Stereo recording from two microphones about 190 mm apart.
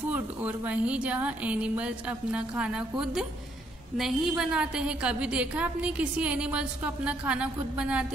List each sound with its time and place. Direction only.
0.1 s a woman's voice: 10° right (ahead or behind)